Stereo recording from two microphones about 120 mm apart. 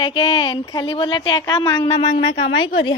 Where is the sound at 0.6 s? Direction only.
30° left (ahead or behind).